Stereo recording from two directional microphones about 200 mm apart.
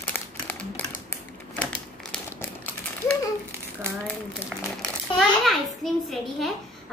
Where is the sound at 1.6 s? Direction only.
5° left (ahead or behind).